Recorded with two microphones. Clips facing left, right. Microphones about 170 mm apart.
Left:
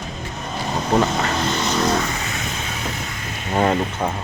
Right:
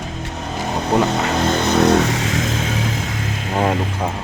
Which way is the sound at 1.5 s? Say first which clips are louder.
Right 8 dB; 55° right (ahead or behind).